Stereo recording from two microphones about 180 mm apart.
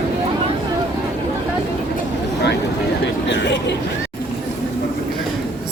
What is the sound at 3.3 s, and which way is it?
Speech, 80° left.